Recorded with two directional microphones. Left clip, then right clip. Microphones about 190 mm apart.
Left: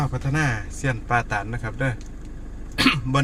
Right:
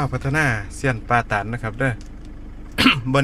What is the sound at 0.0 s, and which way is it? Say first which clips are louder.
A man's voice: right 4 dB; 45° right (ahead or behind).